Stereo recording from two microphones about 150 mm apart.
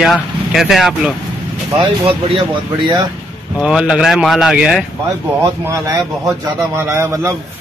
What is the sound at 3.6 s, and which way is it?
Speech, 5° right (ahead or behind).